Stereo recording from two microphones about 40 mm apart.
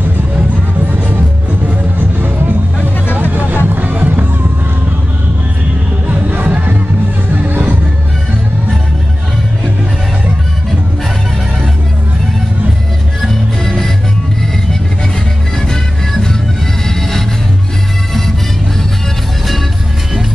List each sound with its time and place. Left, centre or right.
2.0 s music: right
6.0 s music: right
6.3 s music: right
13.3 s music: centre
15.7 s music: centre